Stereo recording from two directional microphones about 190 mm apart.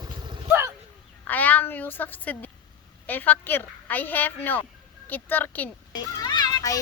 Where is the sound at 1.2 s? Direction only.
10° left (ahead or behind).